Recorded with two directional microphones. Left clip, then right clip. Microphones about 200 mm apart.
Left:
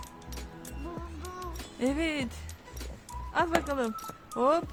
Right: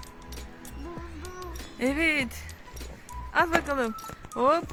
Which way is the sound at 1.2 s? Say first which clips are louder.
Even; centre (ahead or behind).